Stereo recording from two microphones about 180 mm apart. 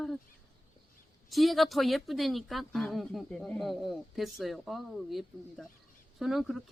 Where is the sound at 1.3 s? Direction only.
Centre (ahead or behind).